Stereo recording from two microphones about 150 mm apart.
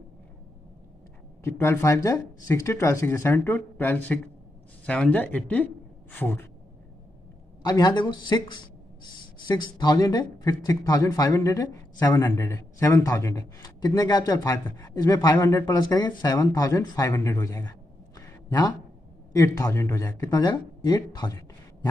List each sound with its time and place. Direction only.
1.4 s speech: 15° left (ahead or behind)
7.6 s speech: 25° left (ahead or behind)